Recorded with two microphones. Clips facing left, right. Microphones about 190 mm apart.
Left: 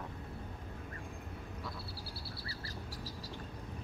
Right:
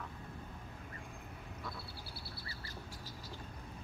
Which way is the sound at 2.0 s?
35° left (ahead or behind).